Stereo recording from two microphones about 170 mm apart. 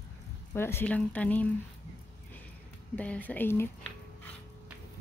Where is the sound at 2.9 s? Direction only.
10° left (ahead or behind).